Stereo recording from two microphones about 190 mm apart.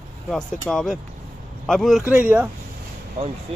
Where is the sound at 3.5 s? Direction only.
30° right (ahead or behind).